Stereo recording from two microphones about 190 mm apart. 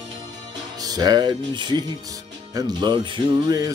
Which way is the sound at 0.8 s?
20° right (ahead or behind).